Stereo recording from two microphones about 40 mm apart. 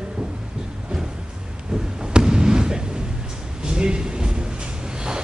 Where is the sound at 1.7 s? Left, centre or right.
Centre.